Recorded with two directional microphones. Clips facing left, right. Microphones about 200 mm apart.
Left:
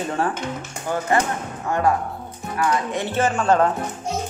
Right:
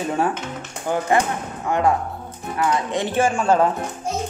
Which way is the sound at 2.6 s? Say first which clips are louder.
Right 1 dB; 15° right (ahead or behind).